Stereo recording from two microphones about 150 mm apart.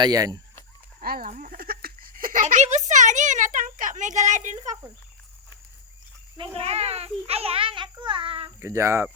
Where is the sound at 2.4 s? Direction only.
50° right (ahead or behind).